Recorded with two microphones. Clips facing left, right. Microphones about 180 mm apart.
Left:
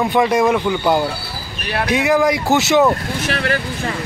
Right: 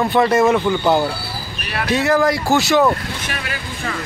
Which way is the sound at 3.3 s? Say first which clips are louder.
Left 11 dB; 60° left (ahead or behind).